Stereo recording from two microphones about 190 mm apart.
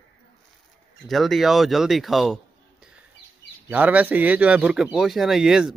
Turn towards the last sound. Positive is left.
turn(degrees=-5)  # may be behind; listen again after turning